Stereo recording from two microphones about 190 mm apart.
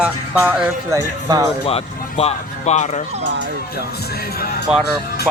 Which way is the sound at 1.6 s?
30° left (ahead or behind).